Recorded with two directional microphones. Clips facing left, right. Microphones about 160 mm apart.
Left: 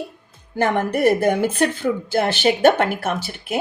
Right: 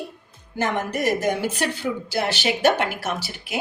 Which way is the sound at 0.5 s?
60° left (ahead or behind).